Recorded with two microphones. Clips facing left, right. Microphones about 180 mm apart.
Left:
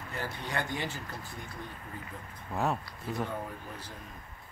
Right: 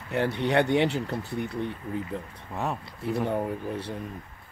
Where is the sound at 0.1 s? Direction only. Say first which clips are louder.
Right 12 dB; 70° right (ahead or behind).